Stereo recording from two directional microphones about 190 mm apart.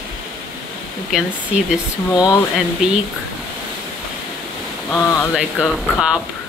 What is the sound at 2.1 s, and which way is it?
Speech, 15° left (ahead or behind).